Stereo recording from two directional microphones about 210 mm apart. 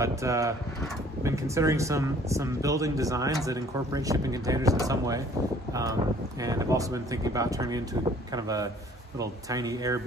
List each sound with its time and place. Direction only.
0.0 s speech: 15° right (ahead or behind)
6.4 s speech: 15° right (ahead or behind)